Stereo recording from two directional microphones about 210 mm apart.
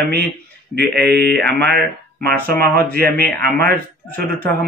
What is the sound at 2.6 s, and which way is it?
Speech, 45° right (ahead or behind).